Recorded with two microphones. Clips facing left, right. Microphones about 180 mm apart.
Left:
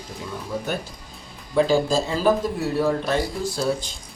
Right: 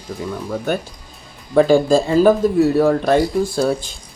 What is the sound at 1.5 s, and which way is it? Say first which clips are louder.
Speech: right 7 dB; 55° right (ahead or behind).